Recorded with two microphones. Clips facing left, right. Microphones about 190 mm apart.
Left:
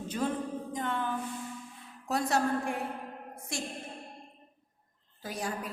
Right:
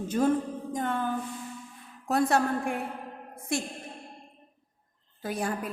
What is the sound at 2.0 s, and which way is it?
Speech, 55° right (ahead or behind).